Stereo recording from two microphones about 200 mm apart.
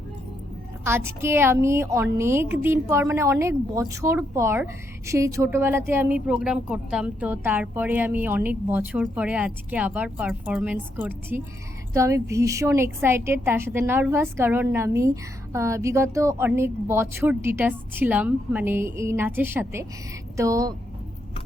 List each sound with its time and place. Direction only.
0.9 s a woman's voice: 10° right (ahead or behind)